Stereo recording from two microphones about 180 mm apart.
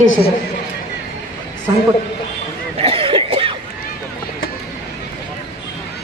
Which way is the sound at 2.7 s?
30° right (ahead or behind).